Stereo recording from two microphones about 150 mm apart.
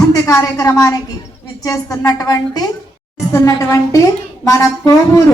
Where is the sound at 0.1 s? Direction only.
20° left (ahead or behind).